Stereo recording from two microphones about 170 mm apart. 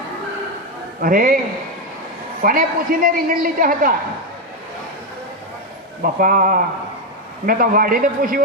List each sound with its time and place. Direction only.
1.0 s a woman's voice: 55° right (ahead or behind)
2.4 s a woman's voice: 55° right (ahead or behind)
6.0 s a woman's voice: 55° right (ahead or behind)